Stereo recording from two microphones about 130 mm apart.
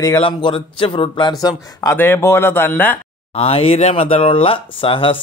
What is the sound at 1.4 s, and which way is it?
A man's voice, 30° left (ahead or behind).